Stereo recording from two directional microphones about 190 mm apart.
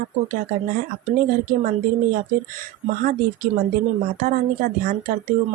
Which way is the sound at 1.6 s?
45° right (ahead or behind).